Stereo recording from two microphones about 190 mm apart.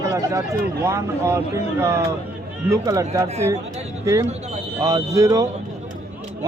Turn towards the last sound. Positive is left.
turn(degrees=-15)  # may be behind; listen again after turning